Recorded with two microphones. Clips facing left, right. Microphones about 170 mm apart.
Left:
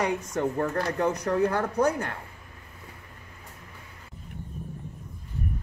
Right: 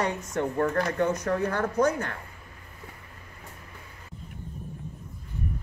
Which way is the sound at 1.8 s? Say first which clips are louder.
Even; 35° left (ahead or behind).